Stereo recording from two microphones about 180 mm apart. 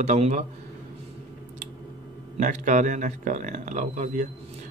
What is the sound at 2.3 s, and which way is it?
Speech, 45° right (ahead or behind).